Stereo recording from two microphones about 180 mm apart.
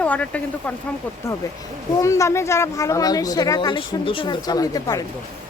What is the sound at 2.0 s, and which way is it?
Speech, 15° left (ahead or behind).